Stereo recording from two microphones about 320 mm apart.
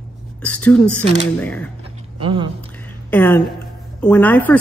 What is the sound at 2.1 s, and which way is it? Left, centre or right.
Speech, centre.